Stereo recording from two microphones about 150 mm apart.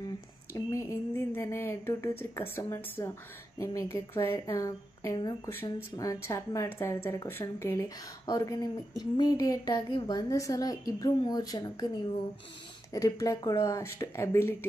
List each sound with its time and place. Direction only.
0.0 s speech: 20° left (ahead or behind)
12.9 s speech: 20° left (ahead or behind)